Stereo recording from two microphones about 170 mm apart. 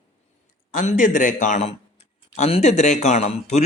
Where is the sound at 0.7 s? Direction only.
50° left (ahead or behind).